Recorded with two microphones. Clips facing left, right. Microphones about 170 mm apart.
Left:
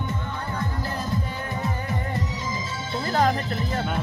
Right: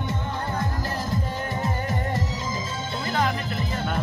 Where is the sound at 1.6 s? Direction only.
40° right (ahead or behind).